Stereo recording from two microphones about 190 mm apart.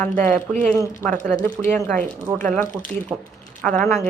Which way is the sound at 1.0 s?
45° right (ahead or behind).